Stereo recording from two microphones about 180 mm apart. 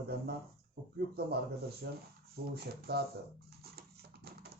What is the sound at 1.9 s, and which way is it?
Speech, 60° right (ahead or behind).